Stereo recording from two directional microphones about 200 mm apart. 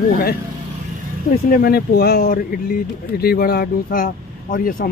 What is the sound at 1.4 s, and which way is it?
Speech, 45° left (ahead or behind).